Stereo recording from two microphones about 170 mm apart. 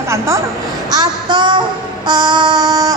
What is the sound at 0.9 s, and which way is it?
A woman's voice, 25° right (ahead or behind).